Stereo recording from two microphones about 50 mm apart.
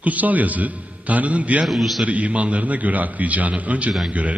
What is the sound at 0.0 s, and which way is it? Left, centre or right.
A man's voice, right.